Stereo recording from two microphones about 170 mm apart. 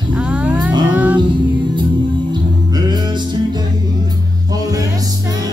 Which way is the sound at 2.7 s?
25° right (ahead or behind).